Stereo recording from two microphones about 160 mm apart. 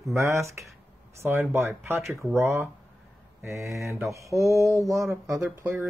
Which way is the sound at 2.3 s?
15° right (ahead or behind).